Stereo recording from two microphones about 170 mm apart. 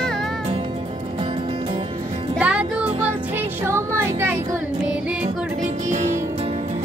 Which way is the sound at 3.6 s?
15° right (ahead or behind).